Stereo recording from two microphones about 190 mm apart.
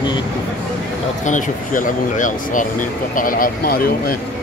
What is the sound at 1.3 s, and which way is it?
Speech, 40° left (ahead or behind).